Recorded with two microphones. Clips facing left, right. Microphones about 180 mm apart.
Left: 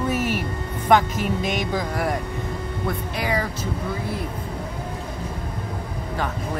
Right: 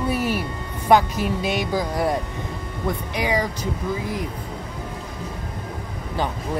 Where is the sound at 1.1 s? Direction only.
35° right (ahead or behind).